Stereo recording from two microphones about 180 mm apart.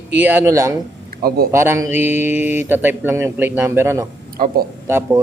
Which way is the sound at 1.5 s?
15° right (ahead or behind).